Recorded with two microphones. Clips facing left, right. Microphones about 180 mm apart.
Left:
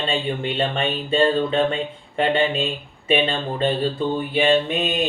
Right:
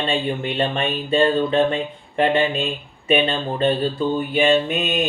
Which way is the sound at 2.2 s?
30° left (ahead or behind).